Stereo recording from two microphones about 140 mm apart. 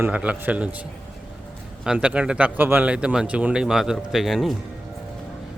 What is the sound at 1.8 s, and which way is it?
Speech, 5° right (ahead or behind).